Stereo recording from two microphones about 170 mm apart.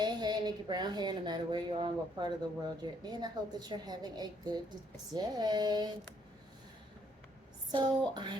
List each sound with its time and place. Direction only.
0.0 s a woman's voice: 25° right (ahead or behind)
7.7 s a woman's voice: 25° right (ahead or behind)